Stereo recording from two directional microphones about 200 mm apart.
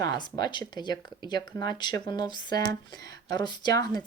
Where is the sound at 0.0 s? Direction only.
20° left (ahead or behind).